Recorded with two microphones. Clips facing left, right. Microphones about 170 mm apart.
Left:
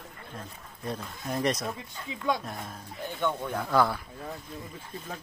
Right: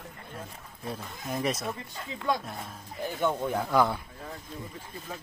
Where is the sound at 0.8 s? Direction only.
Centre (ahead or behind).